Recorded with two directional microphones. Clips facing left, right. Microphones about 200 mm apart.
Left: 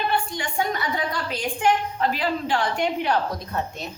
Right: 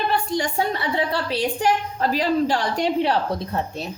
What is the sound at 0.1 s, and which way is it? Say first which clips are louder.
A woman's voice: right 4 dB; 40° right (ahead or behind).